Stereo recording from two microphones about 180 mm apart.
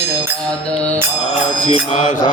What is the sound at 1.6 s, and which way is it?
Mantra, 40° left (ahead or behind).